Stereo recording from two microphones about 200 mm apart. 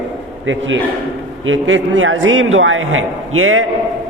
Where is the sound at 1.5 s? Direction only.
70° right (ahead or behind).